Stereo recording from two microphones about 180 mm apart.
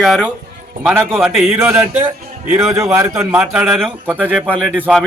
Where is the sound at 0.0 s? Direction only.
Centre (ahead or behind); by 3.2 s 20° right (ahead or behind).